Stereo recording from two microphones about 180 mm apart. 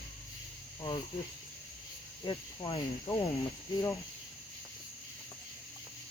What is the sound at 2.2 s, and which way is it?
Speech, 25° left (ahead or behind).